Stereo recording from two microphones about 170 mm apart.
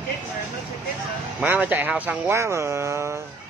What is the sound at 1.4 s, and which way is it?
Speech, 10° right (ahead or behind).